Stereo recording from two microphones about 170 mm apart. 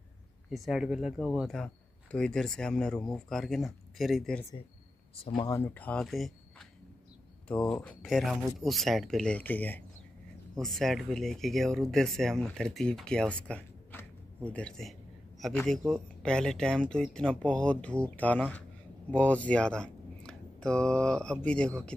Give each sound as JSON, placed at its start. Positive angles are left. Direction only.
{"t": 0.5, "sound": "speech", "side_deg": 0}
{"t": 5.1, "sound": "speech", "side_deg": 30}
{"t": 5.5, "sound": "speech", "side_deg": 10}
{"t": 7.4, "sound": "speech", "side_deg": 5}
{"t": 13.4, "sound": "a sound", "side_deg": 5}
{"t": 15.4, "sound": "speech", "side_deg": 5}